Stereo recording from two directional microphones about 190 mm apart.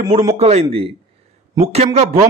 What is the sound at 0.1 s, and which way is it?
Speech, 35° right (ahead or behind).